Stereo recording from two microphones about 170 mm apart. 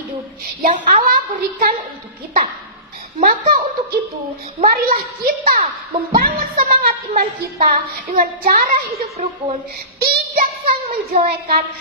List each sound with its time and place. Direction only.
0.6 s a woman's voice: 50° right (ahead or behind)
3.2 s a woman's voice: 55° right (ahead or behind)
9.0 s a woman's voice: 40° right (ahead or behind)
9.9 s child singing: 65° right (ahead or behind)
10.9 s a woman's voice: 65° right (ahead or behind)